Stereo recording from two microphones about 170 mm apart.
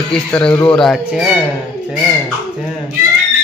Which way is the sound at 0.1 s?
5° left (ahead or behind).